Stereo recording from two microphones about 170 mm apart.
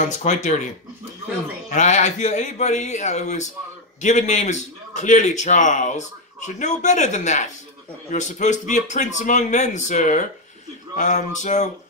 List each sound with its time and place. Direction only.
0.0 s a man's voice: 45° left (ahead or behind)
1.7 s a man's voice: 45° left (ahead or behind)